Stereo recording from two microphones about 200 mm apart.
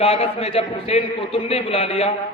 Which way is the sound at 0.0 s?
30° left (ahead or behind).